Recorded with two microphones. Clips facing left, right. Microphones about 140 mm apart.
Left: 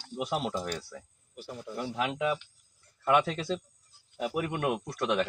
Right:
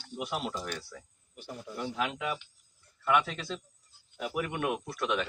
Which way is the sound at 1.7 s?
35° left (ahead or behind).